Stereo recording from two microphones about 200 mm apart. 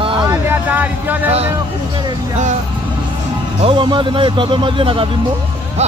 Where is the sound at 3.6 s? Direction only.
25° right (ahead or behind).